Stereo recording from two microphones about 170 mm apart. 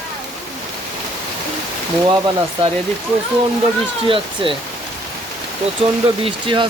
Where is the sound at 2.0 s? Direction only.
25° right (ahead or behind).